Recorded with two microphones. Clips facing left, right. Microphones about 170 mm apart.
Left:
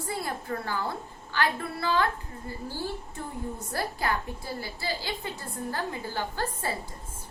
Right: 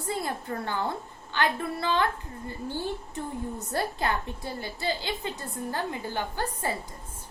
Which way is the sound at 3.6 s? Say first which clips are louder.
Right 2 dB; 20° right (ahead or behind).